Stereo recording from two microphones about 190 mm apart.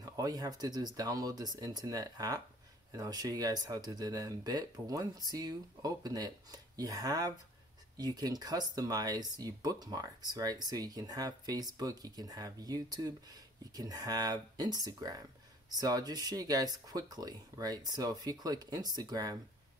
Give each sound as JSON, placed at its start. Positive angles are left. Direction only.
{"t": 0.0, "sound": "speech", "side_deg": -20}